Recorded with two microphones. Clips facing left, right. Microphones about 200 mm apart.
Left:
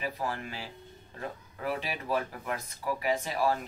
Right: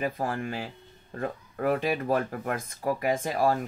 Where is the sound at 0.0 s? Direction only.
50° right (ahead or behind).